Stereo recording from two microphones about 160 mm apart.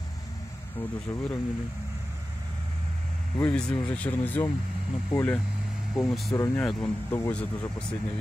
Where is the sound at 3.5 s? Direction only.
10° left (ahead or behind).